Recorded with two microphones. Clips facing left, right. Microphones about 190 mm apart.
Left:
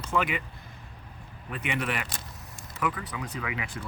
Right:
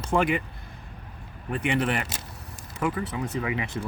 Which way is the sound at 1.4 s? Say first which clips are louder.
Right 6 dB; 35° right (ahead or behind).